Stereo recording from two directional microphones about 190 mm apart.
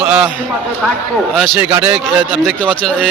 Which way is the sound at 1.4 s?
5° right (ahead or behind).